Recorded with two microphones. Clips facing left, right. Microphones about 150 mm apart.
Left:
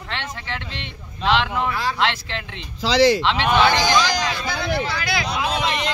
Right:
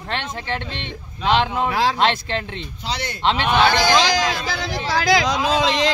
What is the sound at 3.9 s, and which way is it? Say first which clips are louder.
Speech: right 2 dB; 90° right.